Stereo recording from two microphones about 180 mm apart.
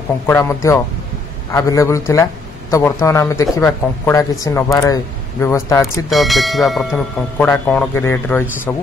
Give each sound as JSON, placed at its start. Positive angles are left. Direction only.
{"t": 0.3, "sound": "speech", "side_deg": 15}
{"t": 6.0, "sound": "speech", "side_deg": 0}